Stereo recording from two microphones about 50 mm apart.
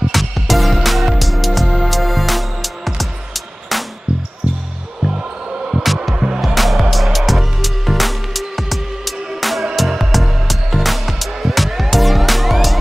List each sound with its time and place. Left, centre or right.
0.1 s music: centre
5.7 s music: centre
6.1 s music: centre
6.4 s music: centre